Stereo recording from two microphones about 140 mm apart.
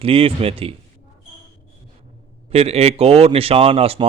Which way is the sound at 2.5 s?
45° right (ahead or behind).